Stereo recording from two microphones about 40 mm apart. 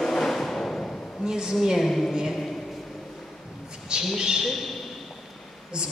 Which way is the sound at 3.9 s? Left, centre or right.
Right.